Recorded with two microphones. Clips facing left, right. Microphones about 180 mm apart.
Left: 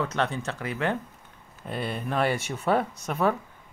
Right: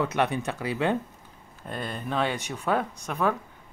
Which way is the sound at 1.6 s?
5° left (ahead or behind).